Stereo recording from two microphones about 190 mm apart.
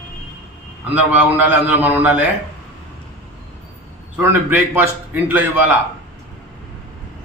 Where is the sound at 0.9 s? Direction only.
10° right (ahead or behind).